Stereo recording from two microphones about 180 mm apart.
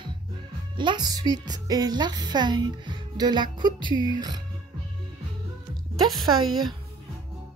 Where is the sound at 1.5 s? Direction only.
20° right (ahead or behind).